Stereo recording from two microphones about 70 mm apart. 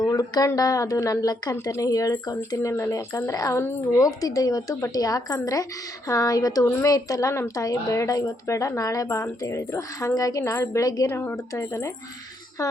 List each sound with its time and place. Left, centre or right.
0.0 s a woman's voice: left
2.6 s a woman's voice: left
11.1 s speech: left
11.5 s speech: left